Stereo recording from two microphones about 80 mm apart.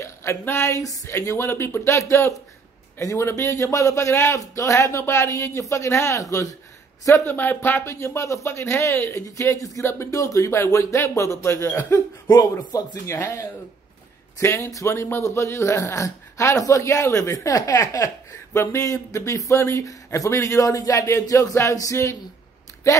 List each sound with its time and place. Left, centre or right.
0.0 s speech: left
7.2 s speech: left
7.8 s speech: left
13.0 s speech: left